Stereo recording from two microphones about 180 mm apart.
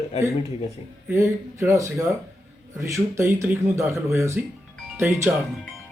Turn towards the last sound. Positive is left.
turn(degrees=-10)  # may be behind; listen again after turning